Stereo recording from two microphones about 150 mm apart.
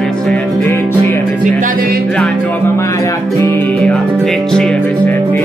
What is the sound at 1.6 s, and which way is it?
Music, 70° right (ahead or behind).